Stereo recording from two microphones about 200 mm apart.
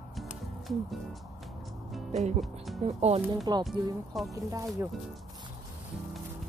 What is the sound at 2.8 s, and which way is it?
Speech, 30° right (ahead or behind).